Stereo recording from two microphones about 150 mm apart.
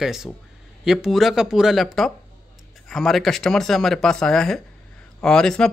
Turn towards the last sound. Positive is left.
turn(degrees=5)  # may be behind; listen again after turning